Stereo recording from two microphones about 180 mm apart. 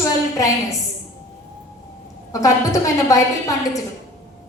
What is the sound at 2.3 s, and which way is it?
A woman's voice, 20° left (ahead or behind).